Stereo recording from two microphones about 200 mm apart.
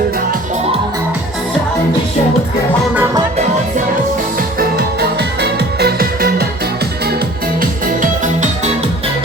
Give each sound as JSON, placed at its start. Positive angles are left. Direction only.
{"t": 4.4, "sound": "music", "side_deg": -50}
{"t": 7.6, "sound": "music", "side_deg": -40}